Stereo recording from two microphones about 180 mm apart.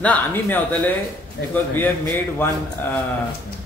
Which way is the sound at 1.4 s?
75° left (ahead or behind).